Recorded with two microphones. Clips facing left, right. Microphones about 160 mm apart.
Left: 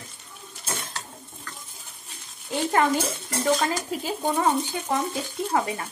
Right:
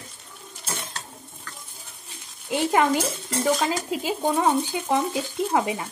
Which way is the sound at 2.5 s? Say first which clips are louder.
Right 2 dB; 15° right (ahead or behind).